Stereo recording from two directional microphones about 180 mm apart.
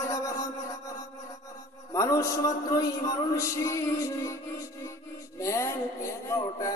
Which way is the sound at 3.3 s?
15° left (ahead or behind).